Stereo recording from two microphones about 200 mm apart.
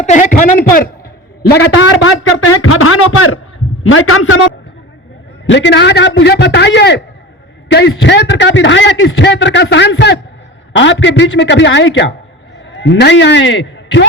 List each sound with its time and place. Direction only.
0.0 s a man's voice: 40° left (ahead or behind)
1.5 s a man's voice: 60° left (ahead or behind); by 4.4 s 85° left
5.5 s a man's voice: 65° left (ahead or behind)